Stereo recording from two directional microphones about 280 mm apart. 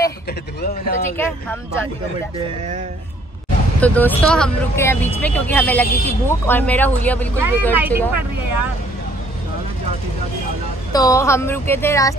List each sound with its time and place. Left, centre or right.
0.0 s speech: left
1.1 s speech: centre
3.8 s speech: centre
7.3 s speech: centre
10.9 s speech: centre